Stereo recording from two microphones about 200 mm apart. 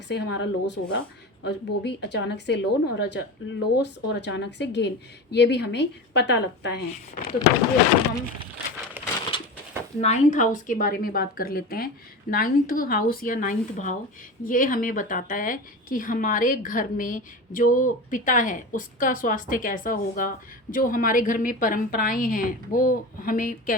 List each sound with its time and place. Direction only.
0.1 s speech: 60° left (ahead or behind)
6.9 s a woman's voice: 45° left (ahead or behind)
10.0 s a woman's voice: 35° left (ahead or behind)